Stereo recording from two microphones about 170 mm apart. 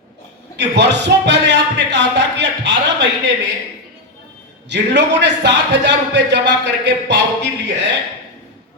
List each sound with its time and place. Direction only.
0.5 s speech: 90° right
4.7 s a man's voice: 90° right